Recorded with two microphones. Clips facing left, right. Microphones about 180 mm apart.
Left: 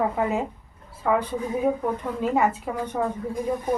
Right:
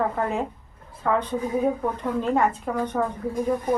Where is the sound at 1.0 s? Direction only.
10° left (ahead or behind).